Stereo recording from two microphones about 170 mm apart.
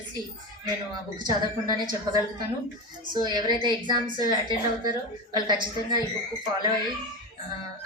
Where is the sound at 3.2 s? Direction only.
25° right (ahead or behind).